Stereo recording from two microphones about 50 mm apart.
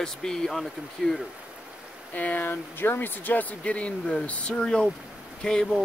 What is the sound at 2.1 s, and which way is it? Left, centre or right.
A man's voice, left.